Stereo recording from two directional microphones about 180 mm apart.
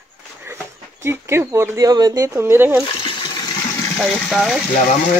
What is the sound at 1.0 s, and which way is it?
Speech, 15° right (ahead or behind).